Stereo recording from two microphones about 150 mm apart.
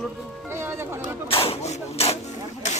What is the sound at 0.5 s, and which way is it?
Music, 15° right (ahead or behind).